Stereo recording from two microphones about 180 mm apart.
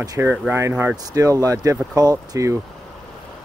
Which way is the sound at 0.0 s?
20° right (ahead or behind).